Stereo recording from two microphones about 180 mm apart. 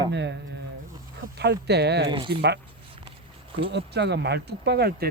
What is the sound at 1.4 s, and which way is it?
Speech, 70° right (ahead or behind).